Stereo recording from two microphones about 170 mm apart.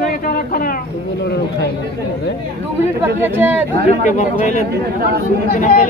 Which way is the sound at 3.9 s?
45° left (ahead or behind).